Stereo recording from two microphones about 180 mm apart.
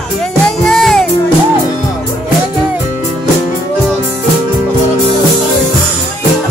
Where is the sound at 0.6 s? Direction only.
Centre (ahead or behind).